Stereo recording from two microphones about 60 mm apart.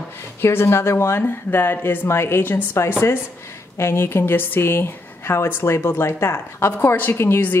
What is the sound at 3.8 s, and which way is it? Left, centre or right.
A woman's voice, left.